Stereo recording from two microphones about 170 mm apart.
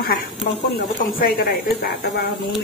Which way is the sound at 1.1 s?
60° left (ahead or behind).